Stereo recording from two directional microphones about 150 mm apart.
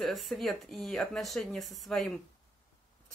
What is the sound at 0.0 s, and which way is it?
Speech, centre (ahead or behind).